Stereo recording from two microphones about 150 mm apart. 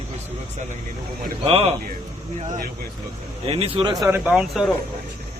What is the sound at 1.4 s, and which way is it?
Speech, 45° right (ahead or behind).